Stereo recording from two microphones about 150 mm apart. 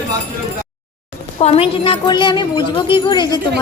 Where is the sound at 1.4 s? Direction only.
40° left (ahead or behind).